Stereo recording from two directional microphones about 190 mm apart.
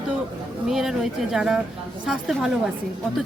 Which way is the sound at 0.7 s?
Centre (ahead or behind).